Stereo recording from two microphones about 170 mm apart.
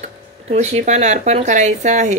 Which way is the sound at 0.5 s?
40° right (ahead or behind).